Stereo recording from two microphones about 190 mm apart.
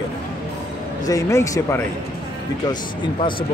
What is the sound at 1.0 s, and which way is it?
Speech, 15° left (ahead or behind).